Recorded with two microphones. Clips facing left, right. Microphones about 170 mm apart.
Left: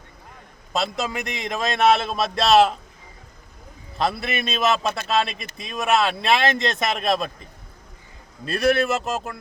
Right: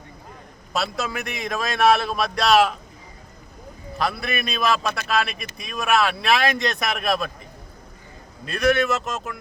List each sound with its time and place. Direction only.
0.7 s speech: 20° left (ahead or behind)
3.9 s speech: 25° left (ahead or behind)
8.4 s speech: 30° left (ahead or behind)